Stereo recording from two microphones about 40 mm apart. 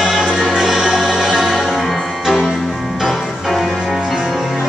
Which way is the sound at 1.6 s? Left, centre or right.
Centre.